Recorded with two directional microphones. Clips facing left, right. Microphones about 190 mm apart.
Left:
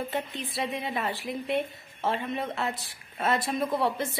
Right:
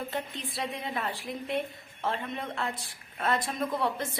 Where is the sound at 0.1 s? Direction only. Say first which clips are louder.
Left 3 dB; centre (ahead or behind).